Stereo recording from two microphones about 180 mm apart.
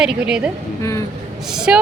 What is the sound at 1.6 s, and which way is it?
Speech, 5° right (ahead or behind).